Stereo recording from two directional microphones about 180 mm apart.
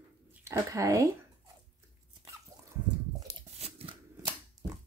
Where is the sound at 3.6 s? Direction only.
35° right (ahead or behind).